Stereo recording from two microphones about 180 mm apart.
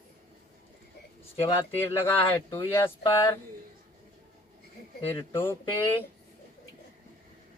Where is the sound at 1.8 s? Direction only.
10° left (ahead or behind).